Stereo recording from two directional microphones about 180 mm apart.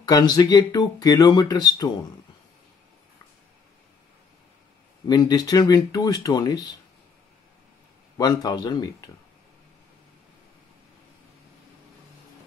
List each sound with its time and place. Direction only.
0.1 s speech: 20° left (ahead or behind)
5.0 s speech: 20° left (ahead or behind)
8.2 s speech: 20° left (ahead or behind)